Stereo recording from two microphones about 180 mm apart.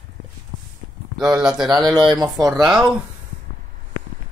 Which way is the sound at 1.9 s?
25° right (ahead or behind).